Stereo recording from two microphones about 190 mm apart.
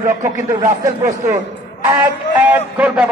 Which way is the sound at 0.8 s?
15° right (ahead or behind).